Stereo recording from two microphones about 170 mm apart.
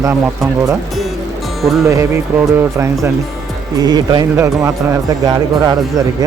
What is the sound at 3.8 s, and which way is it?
Speech, 25° right (ahead or behind).